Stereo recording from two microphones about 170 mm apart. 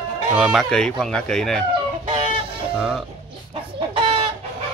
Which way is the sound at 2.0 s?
30° right (ahead or behind).